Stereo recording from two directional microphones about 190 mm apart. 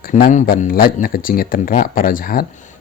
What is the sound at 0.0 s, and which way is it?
Speech, 45° left (ahead or behind).